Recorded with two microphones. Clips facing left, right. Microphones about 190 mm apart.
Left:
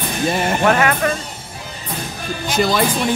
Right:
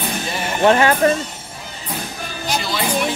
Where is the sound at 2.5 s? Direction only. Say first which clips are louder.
Left 7 dB; 50° left (ahead or behind).